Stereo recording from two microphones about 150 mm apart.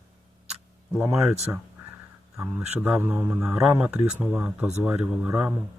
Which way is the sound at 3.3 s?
5° right (ahead or behind).